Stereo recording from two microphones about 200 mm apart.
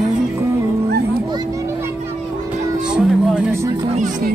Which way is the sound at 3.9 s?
40° right (ahead or behind).